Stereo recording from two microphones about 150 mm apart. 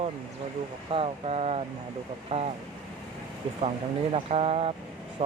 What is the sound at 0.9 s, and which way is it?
Speech, 45° right (ahead or behind).